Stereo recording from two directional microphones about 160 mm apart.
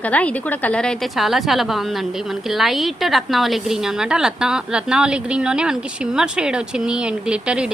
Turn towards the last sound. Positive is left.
turn(degrees=-5)  # may be behind; listen again after turning